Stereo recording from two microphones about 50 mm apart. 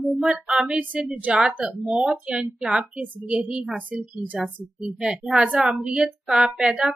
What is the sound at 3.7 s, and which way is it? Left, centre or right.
Speech, right.